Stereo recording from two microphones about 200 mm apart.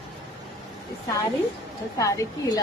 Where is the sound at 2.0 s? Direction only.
15° left (ahead or behind).